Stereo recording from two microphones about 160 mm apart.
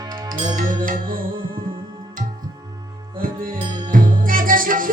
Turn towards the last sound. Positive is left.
turn(degrees=-60)  # may be behind; listen again after turning